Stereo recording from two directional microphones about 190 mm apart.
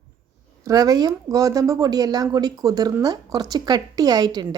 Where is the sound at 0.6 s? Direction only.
20° right (ahead or behind).